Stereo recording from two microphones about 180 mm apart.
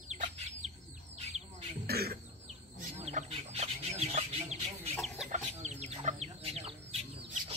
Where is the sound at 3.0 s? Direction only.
40° right (ahead or behind).